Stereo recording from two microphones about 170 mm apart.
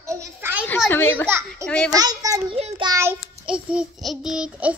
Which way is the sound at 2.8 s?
15° right (ahead or behind).